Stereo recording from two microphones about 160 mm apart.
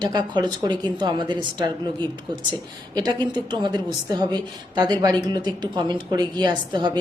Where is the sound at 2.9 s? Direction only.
25° right (ahead or behind).